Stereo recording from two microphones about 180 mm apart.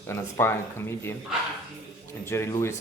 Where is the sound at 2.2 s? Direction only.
15° left (ahead or behind).